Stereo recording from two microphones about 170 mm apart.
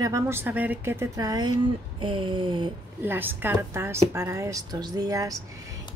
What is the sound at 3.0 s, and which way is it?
A woman's voice, 10° right (ahead or behind).